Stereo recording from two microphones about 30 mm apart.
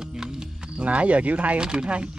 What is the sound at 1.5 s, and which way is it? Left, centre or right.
Speech, right.